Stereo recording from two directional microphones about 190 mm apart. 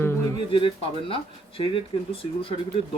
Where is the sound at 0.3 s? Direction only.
25° left (ahead or behind).